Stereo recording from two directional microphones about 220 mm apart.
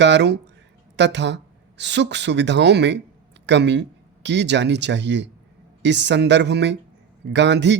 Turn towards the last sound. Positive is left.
turn(degrees=-50)  # may be behind; listen again after turning